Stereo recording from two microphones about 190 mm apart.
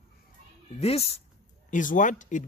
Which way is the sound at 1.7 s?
45° left (ahead or behind).